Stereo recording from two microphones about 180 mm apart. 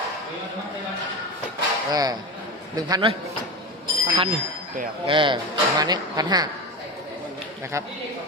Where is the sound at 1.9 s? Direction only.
20° right (ahead or behind).